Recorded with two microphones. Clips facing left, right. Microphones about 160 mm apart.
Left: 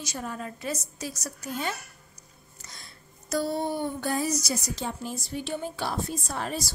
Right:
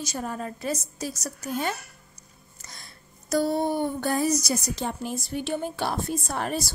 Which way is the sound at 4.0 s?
50° right (ahead or behind).